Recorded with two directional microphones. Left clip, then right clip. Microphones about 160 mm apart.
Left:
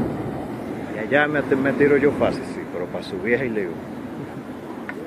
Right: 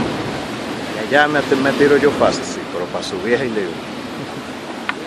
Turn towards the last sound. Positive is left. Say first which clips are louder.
# right 4 dB
turn(degrees=-20)  # may be behind; listen again after turning